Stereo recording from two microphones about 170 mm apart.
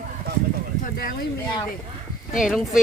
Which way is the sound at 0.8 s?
60° left (ahead or behind).